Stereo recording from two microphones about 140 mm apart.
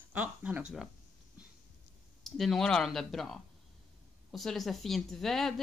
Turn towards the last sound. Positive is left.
turn(degrees=0)  # may be behind; listen again after turning